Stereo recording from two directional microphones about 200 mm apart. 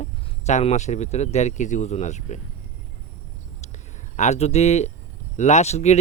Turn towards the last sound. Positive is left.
turn(degrees=35)  # may be behind; listen again after turning